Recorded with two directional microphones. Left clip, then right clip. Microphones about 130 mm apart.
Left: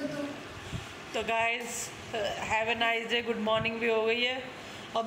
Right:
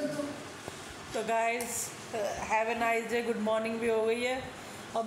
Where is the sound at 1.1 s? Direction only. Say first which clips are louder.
Left 1 dB; 15° right (ahead or behind).